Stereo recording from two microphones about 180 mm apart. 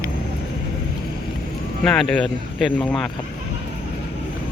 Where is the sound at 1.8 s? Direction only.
5° left (ahead or behind).